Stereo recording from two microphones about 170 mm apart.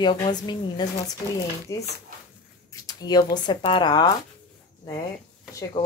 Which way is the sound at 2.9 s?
25° left (ahead or behind).